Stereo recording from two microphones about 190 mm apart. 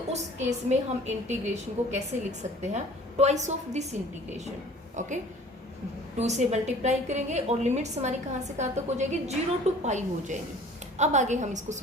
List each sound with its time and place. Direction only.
0.1 s a woman's voice: 35° right (ahead or behind)
4.9 s a woman's voice: 40° right (ahead or behind)